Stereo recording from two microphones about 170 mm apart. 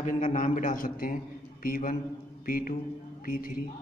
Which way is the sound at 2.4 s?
60° left (ahead or behind).